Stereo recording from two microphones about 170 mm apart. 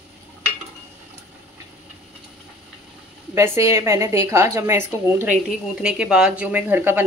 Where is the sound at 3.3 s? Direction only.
15° right (ahead or behind).